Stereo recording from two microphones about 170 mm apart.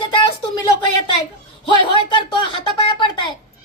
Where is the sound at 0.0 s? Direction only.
30° left (ahead or behind).